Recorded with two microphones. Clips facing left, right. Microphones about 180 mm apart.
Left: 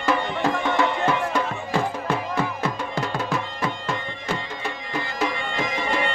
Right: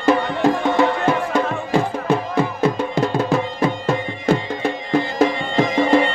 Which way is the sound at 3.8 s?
50° right (ahead or behind).